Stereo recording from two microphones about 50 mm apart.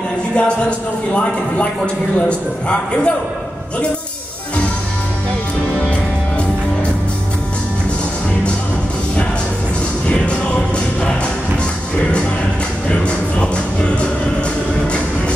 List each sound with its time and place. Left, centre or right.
0.4 s speech: left
10.0 s music: left
13.0 s music: left